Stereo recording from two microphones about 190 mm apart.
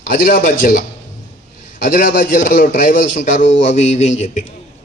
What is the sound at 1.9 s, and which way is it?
A man's voice, 45° left (ahead or behind).